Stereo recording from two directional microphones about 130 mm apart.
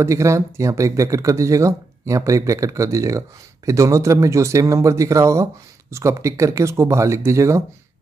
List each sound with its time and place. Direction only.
0.0 s speech: 20° right (ahead or behind)